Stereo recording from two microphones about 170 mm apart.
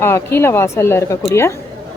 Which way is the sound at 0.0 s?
15° left (ahead or behind).